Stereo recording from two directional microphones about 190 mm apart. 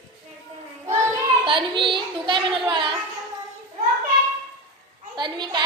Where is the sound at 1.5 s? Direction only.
25° right (ahead or behind).